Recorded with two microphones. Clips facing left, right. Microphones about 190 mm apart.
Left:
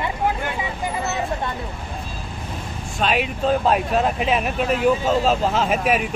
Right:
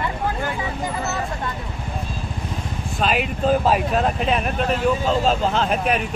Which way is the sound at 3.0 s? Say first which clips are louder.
Even; centre (ahead or behind).